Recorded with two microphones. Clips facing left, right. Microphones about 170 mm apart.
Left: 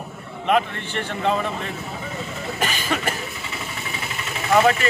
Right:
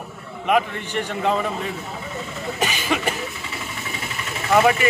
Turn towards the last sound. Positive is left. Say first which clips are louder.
# even
turn(degrees=-10)  # may be behind; listen again after turning